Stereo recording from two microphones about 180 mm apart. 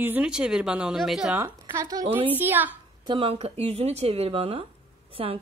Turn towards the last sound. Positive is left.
turn(degrees=-30)  # may be behind; listen again after turning